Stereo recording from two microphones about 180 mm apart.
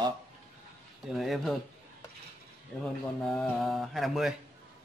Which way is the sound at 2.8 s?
Centre (ahead or behind).